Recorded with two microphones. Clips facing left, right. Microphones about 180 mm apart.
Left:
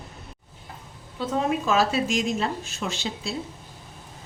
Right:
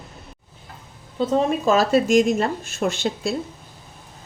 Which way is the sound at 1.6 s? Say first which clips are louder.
Right 5 dB; 40° right (ahead or behind).